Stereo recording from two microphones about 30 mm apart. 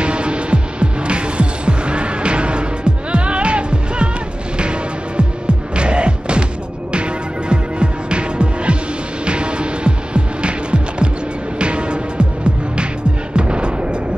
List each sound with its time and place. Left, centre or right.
0.0 s hum: right
4.6 s music: right
6.9 s throbbing: right
9.2 s hum: right
11.6 s music: right
13.4 s music: right